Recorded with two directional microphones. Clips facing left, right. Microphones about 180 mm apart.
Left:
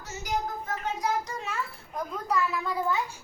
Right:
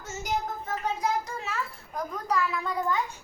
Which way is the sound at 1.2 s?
Centre (ahead or behind).